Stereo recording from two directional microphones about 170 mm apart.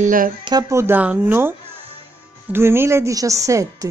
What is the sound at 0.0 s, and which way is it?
Speech, 55° right (ahead or behind).